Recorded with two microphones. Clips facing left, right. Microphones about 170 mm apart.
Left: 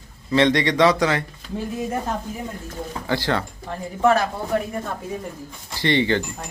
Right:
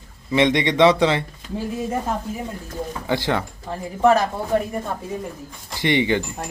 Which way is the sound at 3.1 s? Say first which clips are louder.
Right 1 dB; 20° right (ahead or behind).